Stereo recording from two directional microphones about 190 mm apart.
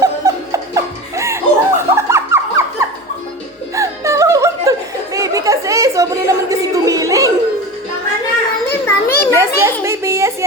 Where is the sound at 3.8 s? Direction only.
15° right (ahead or behind).